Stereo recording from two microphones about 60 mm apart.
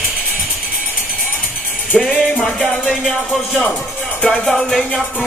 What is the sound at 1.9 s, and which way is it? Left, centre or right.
Music, centre.